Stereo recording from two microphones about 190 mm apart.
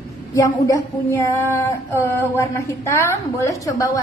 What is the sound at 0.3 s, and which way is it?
Female singing, 20° left (ahead or behind).